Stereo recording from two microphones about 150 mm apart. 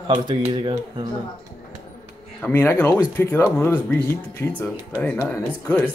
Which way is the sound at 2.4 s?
15° left (ahead or behind).